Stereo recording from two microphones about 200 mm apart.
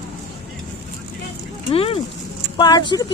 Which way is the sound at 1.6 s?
30° left (ahead or behind).